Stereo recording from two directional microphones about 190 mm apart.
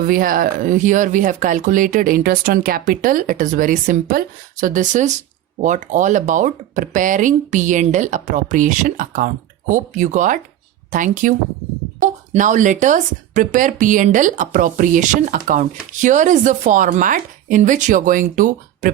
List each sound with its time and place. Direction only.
0.0 s speech: 45° right (ahead or behind)